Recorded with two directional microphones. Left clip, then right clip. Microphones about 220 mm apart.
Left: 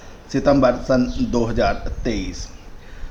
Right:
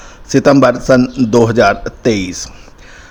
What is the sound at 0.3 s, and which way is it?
Speech, 45° right (ahead or behind).